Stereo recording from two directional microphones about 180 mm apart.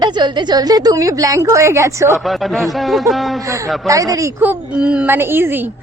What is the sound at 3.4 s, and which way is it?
Speech, 15° right (ahead or behind).